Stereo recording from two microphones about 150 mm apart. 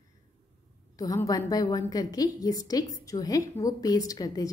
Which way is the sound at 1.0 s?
25° left (ahead or behind).